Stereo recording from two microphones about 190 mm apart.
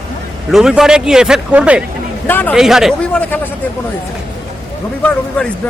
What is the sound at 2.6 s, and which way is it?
Speech, centre (ahead or behind).